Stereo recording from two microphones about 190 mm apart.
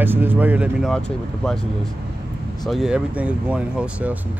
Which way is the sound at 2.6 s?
Centre (ahead or behind).